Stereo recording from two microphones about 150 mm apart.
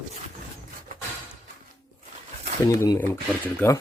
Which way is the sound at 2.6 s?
20° left (ahead or behind).